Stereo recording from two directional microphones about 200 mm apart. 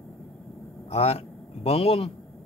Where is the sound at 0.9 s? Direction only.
30° left (ahead or behind).